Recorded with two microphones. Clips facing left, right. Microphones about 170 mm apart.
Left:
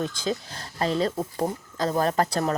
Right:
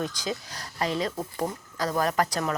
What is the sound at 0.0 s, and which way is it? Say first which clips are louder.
Speech: left 3 dB; 25° left (ahead or behind).